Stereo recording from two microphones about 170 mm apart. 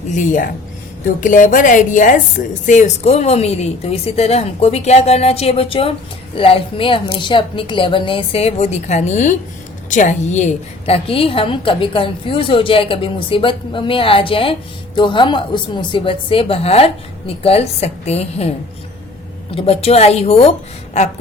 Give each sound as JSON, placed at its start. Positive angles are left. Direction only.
{"t": 0.1, "sound": "a woman's voice", "side_deg": 50}